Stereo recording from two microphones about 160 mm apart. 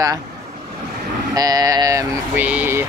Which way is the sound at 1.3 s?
25° right (ahead or behind).